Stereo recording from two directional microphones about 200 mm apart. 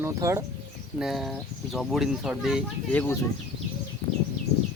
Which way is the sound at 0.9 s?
Centre (ahead or behind).